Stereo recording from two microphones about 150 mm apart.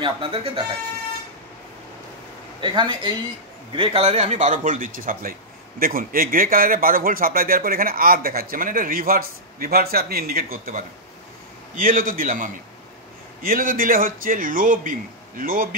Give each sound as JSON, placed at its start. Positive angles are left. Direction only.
{"t": 0.0, "sound": "speech", "side_deg": -40}
{"t": 2.6, "sound": "a man's voice", "side_deg": -30}